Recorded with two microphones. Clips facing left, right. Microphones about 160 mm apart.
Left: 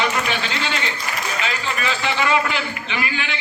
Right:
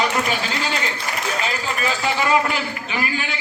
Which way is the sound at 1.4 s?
40° right (ahead or behind).